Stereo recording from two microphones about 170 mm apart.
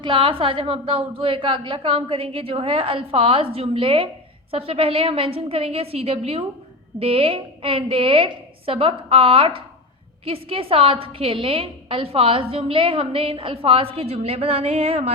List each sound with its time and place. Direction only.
0.0 s a woman's voice: 30° right (ahead or behind)